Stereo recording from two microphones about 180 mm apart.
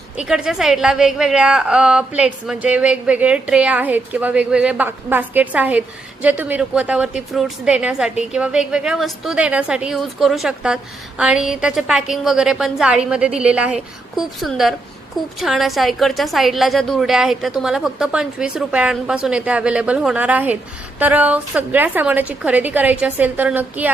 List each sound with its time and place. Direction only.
0.2 s a woman's voice: 5° right (ahead or behind)